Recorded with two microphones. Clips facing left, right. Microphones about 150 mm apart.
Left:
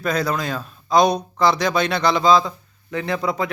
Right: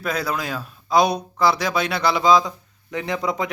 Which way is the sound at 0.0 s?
5° right (ahead or behind).